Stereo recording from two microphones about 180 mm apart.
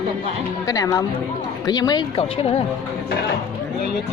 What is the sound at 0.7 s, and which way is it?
Speech, 20° left (ahead or behind).